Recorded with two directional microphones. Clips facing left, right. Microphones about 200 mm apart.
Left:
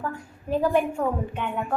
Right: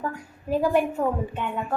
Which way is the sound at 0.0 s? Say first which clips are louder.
Right 1 dB; 10° right (ahead or behind).